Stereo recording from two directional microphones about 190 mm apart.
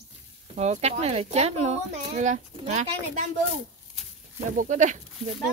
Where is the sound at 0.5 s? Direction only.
35° right (ahead or behind).